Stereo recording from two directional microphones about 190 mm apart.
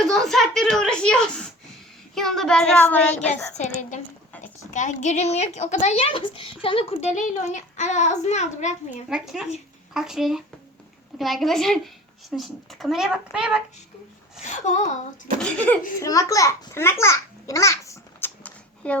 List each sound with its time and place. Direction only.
0.0 s a woman's voice: centre (ahead or behind)
3.8 s a woman's voice: 40° left (ahead or behind)
9.0 s a woman's voice: 5° right (ahead or behind)
14.4 s a woman's voice: 40° left (ahead or behind)
15.4 s speech: 5° left (ahead or behind)
16.0 s babbling: 15° left (ahead or behind)